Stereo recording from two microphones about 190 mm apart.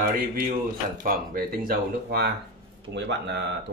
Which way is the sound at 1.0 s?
50° right (ahead or behind).